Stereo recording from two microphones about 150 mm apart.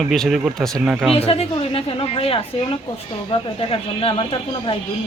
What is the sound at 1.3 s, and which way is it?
A woman's voice, 40° left (ahead or behind).